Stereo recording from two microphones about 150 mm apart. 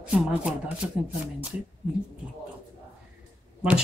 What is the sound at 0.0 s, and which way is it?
Speech, 10° right (ahead or behind).